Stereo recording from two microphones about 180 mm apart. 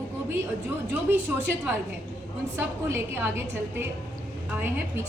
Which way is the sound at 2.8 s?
10° right (ahead or behind).